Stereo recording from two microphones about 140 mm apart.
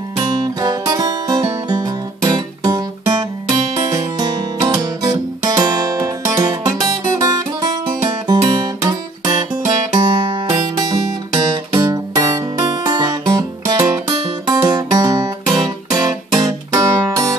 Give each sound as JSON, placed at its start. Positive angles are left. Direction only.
{"t": 0.6, "sound": "music", "side_deg": -25}
{"t": 3.9, "sound": "guitar", "side_deg": -30}
{"t": 8.3, "sound": "music", "side_deg": -30}